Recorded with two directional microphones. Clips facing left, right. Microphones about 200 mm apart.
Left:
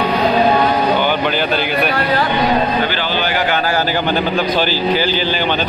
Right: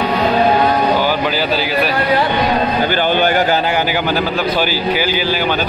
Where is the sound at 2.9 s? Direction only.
50° right (ahead or behind).